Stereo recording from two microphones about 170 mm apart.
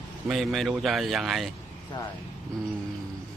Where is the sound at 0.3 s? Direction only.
Centre (ahead or behind).